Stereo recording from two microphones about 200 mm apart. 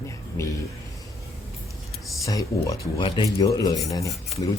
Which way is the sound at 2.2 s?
15° left (ahead or behind).